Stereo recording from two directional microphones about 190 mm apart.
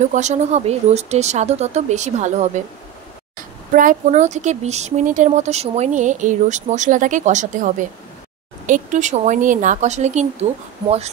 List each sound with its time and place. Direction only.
0.1 s speech: 40° right (ahead or behind)